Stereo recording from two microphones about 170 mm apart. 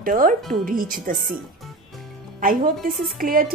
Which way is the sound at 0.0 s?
55° right (ahead or behind).